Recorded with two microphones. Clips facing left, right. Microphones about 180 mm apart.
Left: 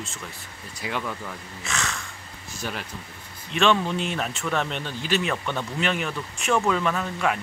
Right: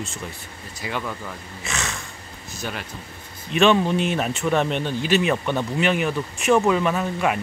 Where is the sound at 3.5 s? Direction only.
15° right (ahead or behind).